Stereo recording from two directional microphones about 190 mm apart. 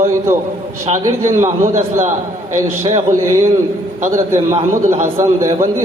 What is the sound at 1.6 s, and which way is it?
Speech, 40° right (ahead or behind).